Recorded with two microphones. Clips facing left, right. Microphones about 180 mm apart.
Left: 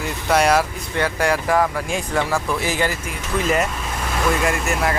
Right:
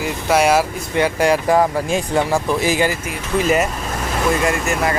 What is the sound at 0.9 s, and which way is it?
Speech, 15° right (ahead or behind).